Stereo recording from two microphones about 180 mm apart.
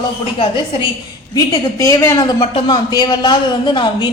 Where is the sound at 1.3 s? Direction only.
20° left (ahead or behind).